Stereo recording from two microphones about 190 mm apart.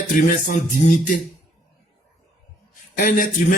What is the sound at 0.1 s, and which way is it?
A man's voice, 45° left (ahead or behind).